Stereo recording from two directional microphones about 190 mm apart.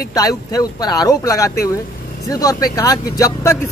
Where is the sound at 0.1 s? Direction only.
20° left (ahead or behind).